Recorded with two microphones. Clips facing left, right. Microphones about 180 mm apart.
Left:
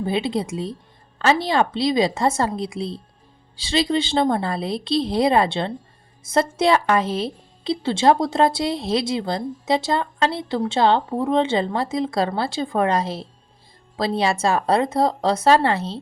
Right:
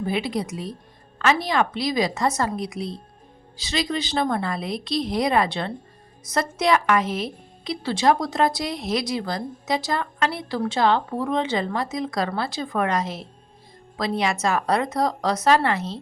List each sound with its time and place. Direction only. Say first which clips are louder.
0.0 s a woman's voice: left 3 dB; 25° left (ahead or behind)